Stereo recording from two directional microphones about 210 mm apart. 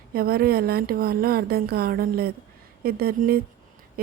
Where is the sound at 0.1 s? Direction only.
45° right (ahead or behind).